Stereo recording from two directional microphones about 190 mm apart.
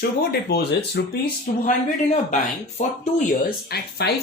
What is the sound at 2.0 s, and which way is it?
Speech, 35° left (ahead or behind).